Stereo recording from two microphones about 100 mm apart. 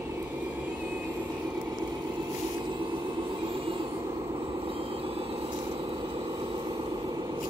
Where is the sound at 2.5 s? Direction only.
55° right (ahead or behind).